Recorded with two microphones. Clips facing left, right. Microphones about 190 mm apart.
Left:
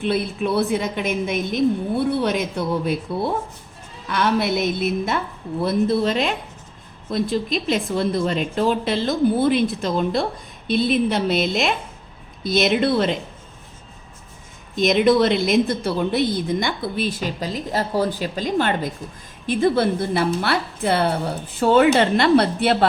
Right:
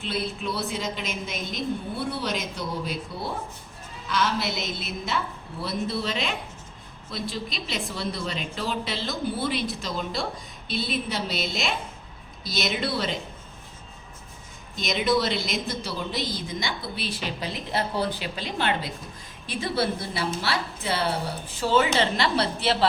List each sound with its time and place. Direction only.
0.0 s a woman's voice: 55° left (ahead or behind)
14.8 s a woman's voice: 50° left (ahead or behind)